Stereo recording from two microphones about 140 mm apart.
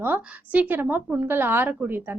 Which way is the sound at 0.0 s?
10° right (ahead or behind).